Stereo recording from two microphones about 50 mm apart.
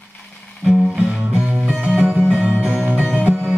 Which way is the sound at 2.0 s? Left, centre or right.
Right.